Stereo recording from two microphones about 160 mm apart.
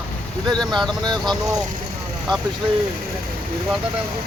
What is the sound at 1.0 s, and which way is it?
Speech, 25° right (ahead or behind).